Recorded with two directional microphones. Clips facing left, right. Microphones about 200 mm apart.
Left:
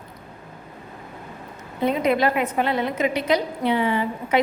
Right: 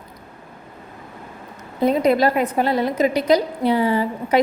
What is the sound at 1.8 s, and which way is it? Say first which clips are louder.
A woman's voice: right 4 dB; 40° right (ahead or behind).